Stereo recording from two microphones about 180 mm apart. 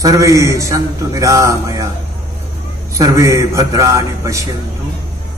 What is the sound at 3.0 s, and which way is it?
A man's voice, 15° right (ahead or behind).